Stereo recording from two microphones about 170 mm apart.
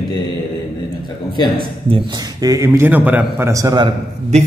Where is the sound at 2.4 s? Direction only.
20° right (ahead or behind).